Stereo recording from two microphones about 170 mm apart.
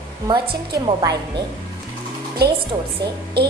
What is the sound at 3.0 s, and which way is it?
Speech, 70° right (ahead or behind).